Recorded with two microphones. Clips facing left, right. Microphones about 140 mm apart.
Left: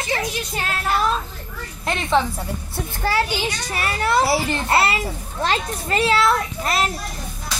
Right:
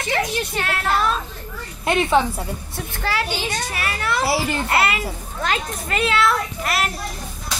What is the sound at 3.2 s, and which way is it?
A child's voice, 40° left (ahead or behind).